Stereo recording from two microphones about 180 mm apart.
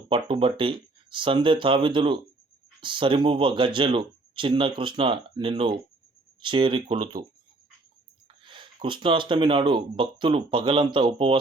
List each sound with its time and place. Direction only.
0.1 s speech: 30° right (ahead or behind)
8.4 s speech: 30° right (ahead or behind)